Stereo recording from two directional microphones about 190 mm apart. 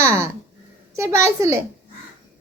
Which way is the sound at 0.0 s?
15° right (ahead or behind).